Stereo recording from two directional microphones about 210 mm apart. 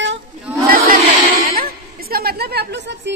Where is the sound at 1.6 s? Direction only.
45° right (ahead or behind).